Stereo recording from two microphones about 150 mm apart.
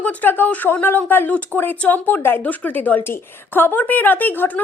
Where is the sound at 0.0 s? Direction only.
10° left (ahead or behind).